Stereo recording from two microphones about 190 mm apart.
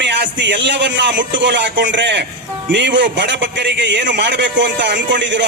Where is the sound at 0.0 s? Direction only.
65° right (ahead or behind).